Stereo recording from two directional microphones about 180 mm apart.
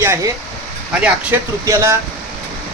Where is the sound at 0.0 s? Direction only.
15° right (ahead or behind).